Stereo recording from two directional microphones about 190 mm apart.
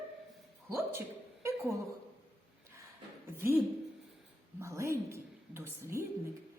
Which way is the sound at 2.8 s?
15° right (ahead or behind).